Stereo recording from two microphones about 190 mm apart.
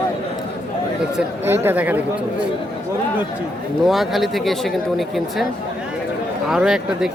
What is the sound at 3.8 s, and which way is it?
Speech, centre (ahead or behind).